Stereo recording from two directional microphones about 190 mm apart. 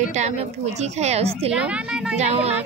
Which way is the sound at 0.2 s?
35° right (ahead or behind).